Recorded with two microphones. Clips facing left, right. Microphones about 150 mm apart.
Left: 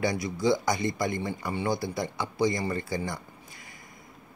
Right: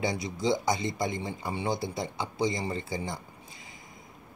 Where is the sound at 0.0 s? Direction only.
25° right (ahead or behind).